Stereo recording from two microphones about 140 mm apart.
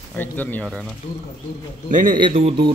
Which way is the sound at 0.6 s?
Centre (ahead or behind).